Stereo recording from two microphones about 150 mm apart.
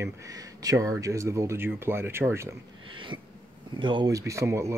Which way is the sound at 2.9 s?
35° right (ahead or behind).